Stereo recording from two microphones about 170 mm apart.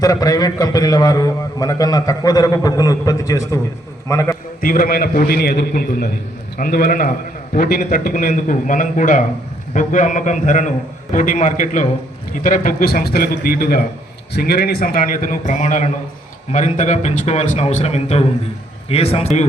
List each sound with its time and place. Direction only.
0.0 s a man's voice: 20° left (ahead or behind)
4.6 s a man's voice: 55° left (ahead or behind); by 19.5 s 40° left (ahead or behind)